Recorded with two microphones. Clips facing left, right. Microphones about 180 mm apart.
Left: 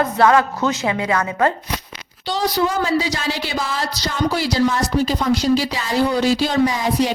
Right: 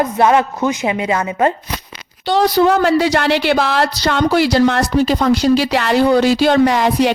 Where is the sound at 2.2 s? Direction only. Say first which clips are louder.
Right 7 dB; 60° right (ahead or behind).